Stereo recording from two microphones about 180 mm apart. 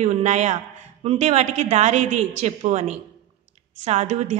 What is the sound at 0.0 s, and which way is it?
A woman's voice, 40° right (ahead or behind).